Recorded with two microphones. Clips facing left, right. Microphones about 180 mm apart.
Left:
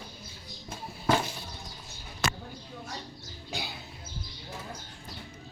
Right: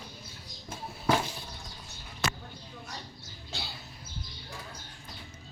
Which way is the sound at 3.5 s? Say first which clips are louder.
Left 4 dB; 15° left (ahead or behind).